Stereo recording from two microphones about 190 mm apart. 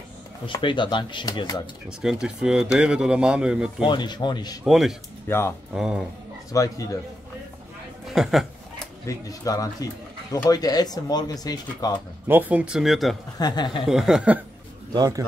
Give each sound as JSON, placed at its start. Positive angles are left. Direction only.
{"t": 0.5, "sound": "speech", "side_deg": 25}
{"t": 2.0, "sound": "speech", "side_deg": -5}
{"t": 3.8, "sound": "speech", "side_deg": 25}
{"t": 4.6, "sound": "speech", "side_deg": 0}
{"t": 5.3, "sound": "speech", "side_deg": 10}
{"t": 5.8, "sound": "speech", "side_deg": -5}
{"t": 6.5, "sound": "speech", "side_deg": 15}
{"t": 8.1, "sound": "chuckle", "side_deg": 0}
{"t": 9.0, "sound": "speech", "side_deg": 20}
{"t": 12.3, "sound": "speech", "side_deg": -10}
{"t": 13.4, "sound": "speech", "side_deg": 20}
{"t": 13.8, "sound": "speech", "side_deg": 0}
{"t": 14.9, "sound": "a man's voice", "side_deg": -20}